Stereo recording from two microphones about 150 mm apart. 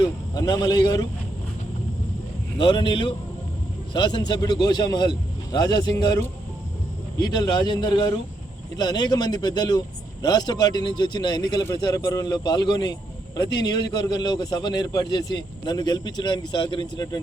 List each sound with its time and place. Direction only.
0.3 s a man's voice: 25° left (ahead or behind)
2.6 s a man's voice: 30° left (ahead or behind)